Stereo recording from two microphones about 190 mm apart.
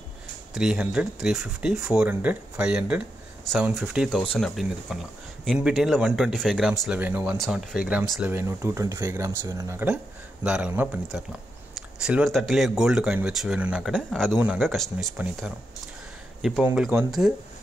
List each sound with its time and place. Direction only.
0.6 s speech: 5° right (ahead or behind)